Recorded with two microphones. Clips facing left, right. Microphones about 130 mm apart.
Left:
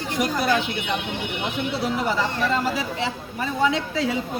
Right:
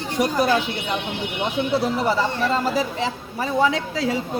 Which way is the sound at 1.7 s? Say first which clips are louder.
Right 3 dB; 35° right (ahead or behind).